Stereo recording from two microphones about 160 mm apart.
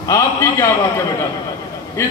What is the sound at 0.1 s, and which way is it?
Speech, 20° left (ahead or behind).